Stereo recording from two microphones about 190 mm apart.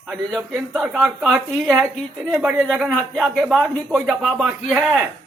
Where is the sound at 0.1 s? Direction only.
Centre (ahead or behind).